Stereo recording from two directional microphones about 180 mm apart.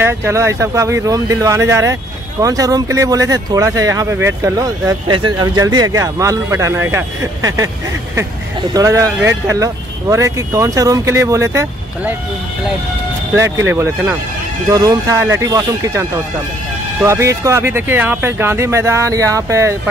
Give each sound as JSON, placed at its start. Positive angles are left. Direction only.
{"t": 0.0, "sound": "speech", "side_deg": -15}
{"t": 8.7, "sound": "speech", "side_deg": -20}
{"t": 13.3, "sound": "speech", "side_deg": -15}